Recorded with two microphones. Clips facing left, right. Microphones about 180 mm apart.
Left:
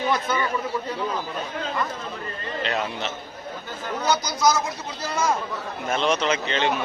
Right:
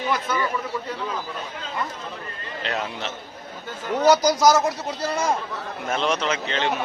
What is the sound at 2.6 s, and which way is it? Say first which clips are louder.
Speech: even; centre (ahead or behind).